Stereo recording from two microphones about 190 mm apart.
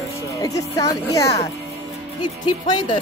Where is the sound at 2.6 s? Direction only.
20° left (ahead or behind).